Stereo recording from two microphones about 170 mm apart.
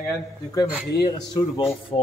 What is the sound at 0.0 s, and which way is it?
A man's voice, 15° left (ahead or behind).